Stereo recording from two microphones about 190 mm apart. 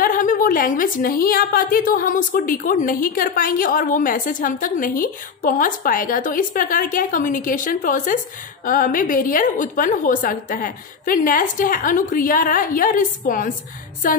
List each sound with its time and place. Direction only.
0.0 s a woman's voice: 45° left (ahead or behind)